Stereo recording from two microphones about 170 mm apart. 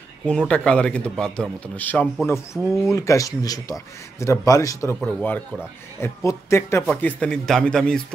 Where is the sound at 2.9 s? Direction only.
20° left (ahead or behind).